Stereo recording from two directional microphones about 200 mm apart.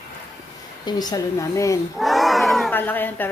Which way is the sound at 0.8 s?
20° left (ahead or behind).